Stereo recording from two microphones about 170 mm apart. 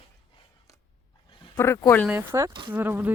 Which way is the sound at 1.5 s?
15° left (ahead or behind).